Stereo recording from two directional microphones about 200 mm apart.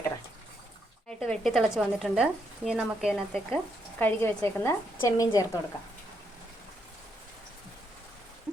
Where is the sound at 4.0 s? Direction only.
10° left (ahead or behind).